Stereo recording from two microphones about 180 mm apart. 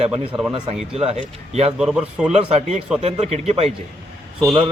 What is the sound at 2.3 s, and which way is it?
Speech, 35° right (ahead or behind).